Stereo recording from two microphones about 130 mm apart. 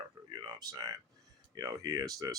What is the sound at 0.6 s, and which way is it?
Speech, 30° right (ahead or behind).